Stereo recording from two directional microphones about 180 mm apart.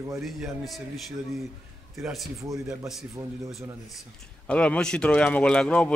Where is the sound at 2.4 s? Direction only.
20° right (ahead or behind).